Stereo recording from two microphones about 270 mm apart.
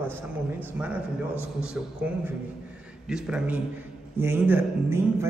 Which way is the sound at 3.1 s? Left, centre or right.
Centre.